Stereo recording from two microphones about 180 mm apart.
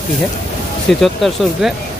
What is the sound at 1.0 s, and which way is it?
Speech, centre (ahead or behind).